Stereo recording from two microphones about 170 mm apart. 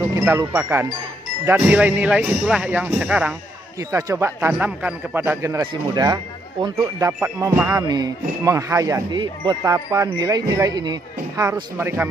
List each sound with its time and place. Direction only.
0.1 s speech: 15° right (ahead or behind)